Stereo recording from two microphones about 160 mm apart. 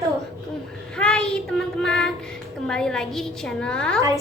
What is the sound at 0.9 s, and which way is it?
Child singing, 5° left (ahead or behind).